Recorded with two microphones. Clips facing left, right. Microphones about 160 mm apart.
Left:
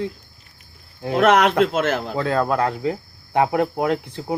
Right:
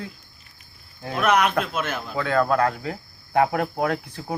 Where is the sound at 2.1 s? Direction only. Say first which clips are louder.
Right 3 dB; 25° left (ahead or behind).